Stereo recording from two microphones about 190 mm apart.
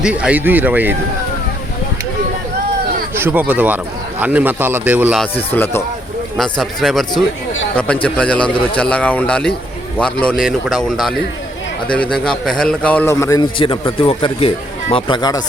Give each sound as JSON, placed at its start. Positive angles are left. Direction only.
{"t": 0.0, "sound": "a man's voice", "side_deg": -5}
{"t": 3.2, "sound": "a man's voice", "side_deg": -10}
{"t": 5.5, "sound": "a man's voice", "side_deg": 10}
{"t": 8.0, "sound": "a man's voice", "side_deg": 5}
{"t": 12.1, "sound": "a man's voice", "side_deg": 5}
{"t": 13.6, "sound": "speech", "side_deg": 30}